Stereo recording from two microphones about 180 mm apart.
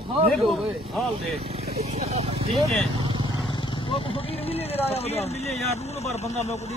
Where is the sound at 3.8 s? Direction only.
30° left (ahead or behind).